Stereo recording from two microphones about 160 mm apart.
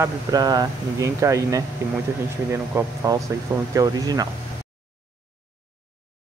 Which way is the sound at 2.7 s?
20° right (ahead or behind).